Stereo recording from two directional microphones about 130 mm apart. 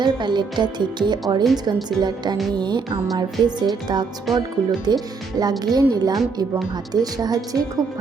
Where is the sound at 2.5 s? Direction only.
35° right (ahead or behind).